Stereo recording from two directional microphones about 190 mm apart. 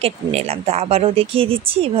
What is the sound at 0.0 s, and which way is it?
Speech, 30° right (ahead or behind).